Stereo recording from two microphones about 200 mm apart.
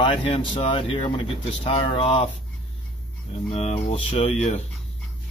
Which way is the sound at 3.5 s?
30° left (ahead or behind).